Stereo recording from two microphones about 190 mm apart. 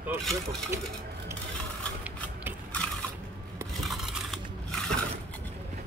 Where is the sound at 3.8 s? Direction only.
Centre (ahead or behind).